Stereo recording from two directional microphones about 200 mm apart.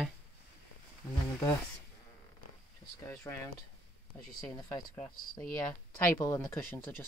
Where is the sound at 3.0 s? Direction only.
15° left (ahead or behind).